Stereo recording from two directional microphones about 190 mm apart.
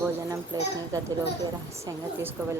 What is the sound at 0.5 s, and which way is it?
Speech, 20° right (ahead or behind).